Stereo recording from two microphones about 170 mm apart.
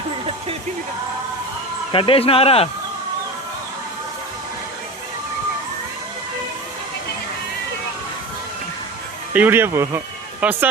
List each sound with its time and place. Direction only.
1.9 s speech: 30° left (ahead or behind)
9.3 s speech: 10° right (ahead or behind)